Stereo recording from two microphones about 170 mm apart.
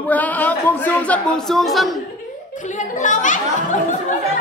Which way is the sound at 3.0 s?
50° left (ahead or behind).